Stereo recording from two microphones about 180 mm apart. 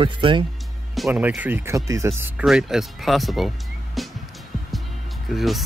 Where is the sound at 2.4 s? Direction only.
Centre (ahead or behind).